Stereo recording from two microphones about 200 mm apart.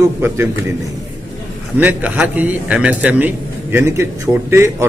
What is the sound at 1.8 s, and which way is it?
A man's voice, 10° right (ahead or behind).